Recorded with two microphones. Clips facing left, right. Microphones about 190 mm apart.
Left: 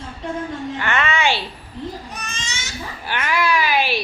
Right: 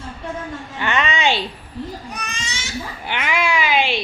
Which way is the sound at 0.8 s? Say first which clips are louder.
Right 1 dB; 15° right (ahead or behind).